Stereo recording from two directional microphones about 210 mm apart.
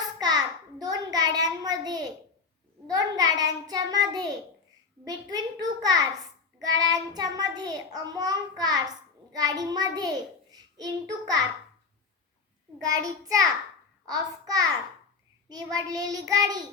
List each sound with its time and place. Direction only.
0.2 s a sound: 20° right (ahead or behind)
2.9 s a child's voice: 20° right (ahead or behind)
12.8 s child singing: 15° right (ahead or behind)
14.0 s a child's voice: 20° right (ahead or behind)
15.4 s child singing: 20° right (ahead or behind)